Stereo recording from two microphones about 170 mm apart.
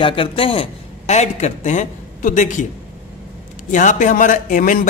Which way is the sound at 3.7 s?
50° left (ahead or behind).